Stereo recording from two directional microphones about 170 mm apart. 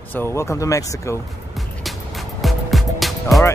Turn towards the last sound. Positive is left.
turn(degrees=0)  # may be behind; listen again after turning